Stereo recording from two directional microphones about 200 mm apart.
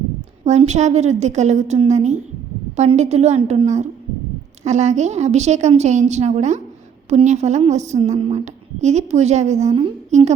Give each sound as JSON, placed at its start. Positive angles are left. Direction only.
{"t": 0.4, "sound": "a woman's voice", "side_deg": -35}